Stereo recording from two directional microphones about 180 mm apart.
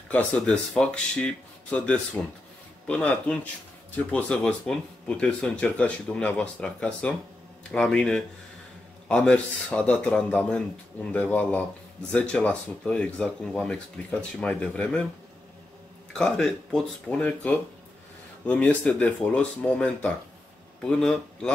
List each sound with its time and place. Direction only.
0.1 s speech: 5° left (ahead or behind)
16.1 s speech: 5° left (ahead or behind)